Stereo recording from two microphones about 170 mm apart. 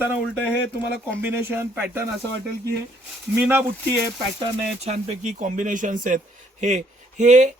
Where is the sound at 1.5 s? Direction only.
15° right (ahead or behind).